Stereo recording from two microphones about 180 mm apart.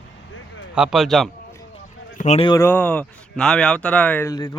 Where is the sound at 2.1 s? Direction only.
40° left (ahead or behind).